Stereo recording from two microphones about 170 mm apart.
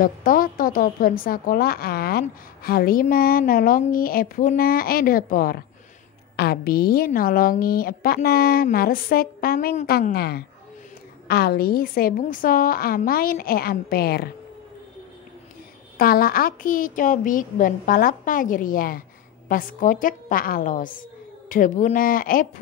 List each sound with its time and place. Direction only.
0.0 s a woman's voice: 55° left (ahead or behind)
16.0 s a woman's voice: 60° left (ahead or behind)